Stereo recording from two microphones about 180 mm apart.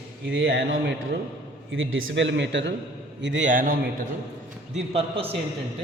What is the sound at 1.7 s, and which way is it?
A man's voice, 90° right.